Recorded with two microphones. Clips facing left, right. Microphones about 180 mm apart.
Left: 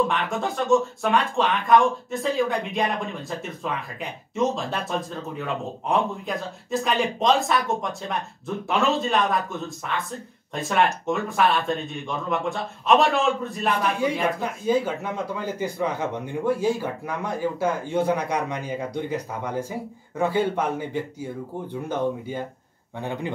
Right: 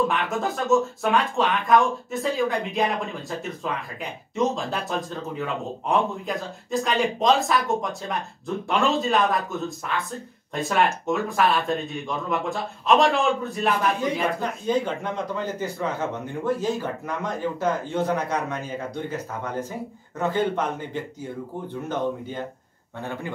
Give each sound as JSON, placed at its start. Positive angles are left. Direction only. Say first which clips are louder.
{"t": 0.1, "sound": "speech", "louder": "even", "side_deg": 0}
{"t": 14.0, "sound": "speech", "louder": "left 1 dB", "side_deg": 10}